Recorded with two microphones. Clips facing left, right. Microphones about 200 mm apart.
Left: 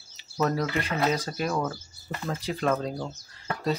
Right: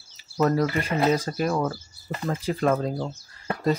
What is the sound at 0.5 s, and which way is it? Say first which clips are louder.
Speech: right 6 dB; 10° right (ahead or behind).